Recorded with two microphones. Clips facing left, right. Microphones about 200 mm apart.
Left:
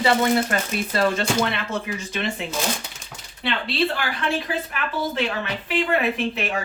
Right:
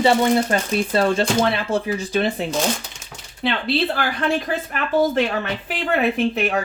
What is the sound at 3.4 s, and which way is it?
A woman's voice, 45° right (ahead or behind).